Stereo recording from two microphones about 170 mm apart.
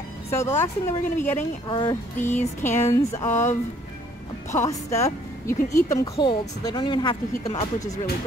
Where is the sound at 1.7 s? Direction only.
30° left (ahead or behind).